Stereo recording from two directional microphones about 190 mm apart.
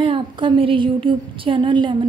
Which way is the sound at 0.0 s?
25° right (ahead or behind).